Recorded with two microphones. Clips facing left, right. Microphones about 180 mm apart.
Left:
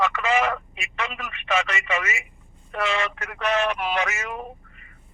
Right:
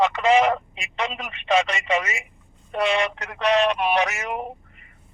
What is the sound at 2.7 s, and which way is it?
Speech, 20° right (ahead or behind).